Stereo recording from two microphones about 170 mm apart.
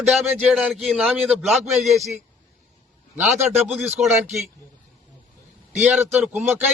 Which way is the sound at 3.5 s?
10° right (ahead or behind).